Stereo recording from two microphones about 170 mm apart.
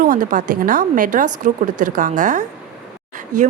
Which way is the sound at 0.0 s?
55° right (ahead or behind).